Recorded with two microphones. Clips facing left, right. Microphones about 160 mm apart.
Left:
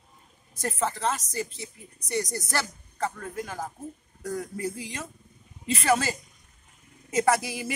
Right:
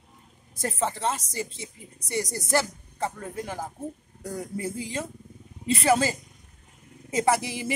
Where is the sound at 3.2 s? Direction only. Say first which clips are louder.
Right 1 dB; 25° right (ahead or behind).